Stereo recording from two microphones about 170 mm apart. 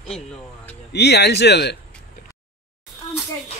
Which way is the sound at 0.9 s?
75° left (ahead or behind).